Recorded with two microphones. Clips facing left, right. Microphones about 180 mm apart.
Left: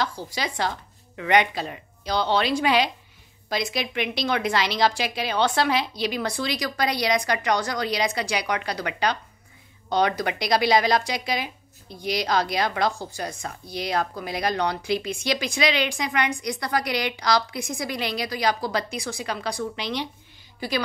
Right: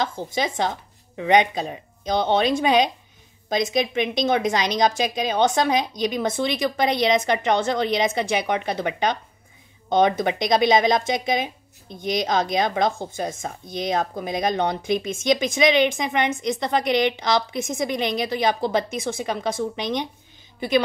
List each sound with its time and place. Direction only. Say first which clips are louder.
0.0 s a woman's voice: right 4 dB; 20° right (ahead or behind)